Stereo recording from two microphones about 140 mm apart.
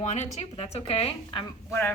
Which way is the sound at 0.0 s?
55° left (ahead or behind).